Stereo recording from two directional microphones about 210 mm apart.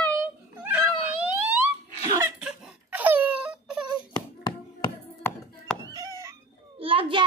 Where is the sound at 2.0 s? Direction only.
15° right (ahead or behind).